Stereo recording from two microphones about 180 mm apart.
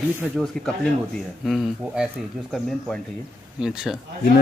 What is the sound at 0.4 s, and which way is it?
Speech, 5° left (ahead or behind).